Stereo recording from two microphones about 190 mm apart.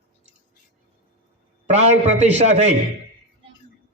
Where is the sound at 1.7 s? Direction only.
35° right (ahead or behind).